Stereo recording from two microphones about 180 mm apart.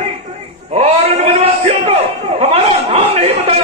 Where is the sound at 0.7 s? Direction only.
35° right (ahead or behind).